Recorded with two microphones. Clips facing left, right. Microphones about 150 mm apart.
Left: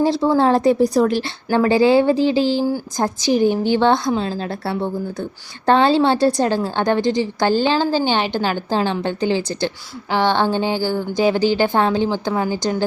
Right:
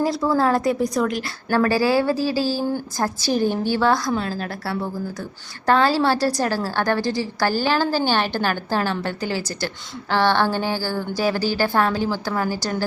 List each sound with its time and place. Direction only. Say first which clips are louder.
0.0 s a woman's voice: left 4 dB; 25° left (ahead or behind)